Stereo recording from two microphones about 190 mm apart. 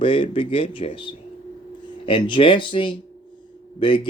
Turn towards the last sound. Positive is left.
turn(degrees=25)  # may be behind; listen again after turning